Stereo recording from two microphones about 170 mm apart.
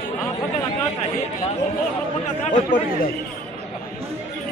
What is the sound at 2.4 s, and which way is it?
Speech, 50° left (ahead or behind).